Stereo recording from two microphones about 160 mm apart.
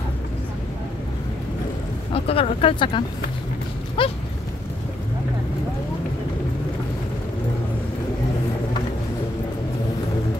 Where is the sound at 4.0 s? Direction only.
30° left (ahead or behind).